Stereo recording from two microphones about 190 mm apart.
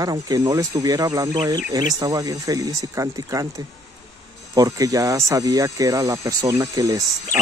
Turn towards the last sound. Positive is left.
turn(degrees=-20)  # may be behind; listen again after turning